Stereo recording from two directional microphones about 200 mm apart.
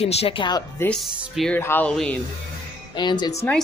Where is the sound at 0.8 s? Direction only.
Centre (ahead or behind).